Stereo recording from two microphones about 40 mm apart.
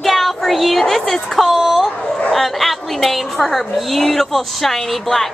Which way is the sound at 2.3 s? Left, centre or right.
Centre.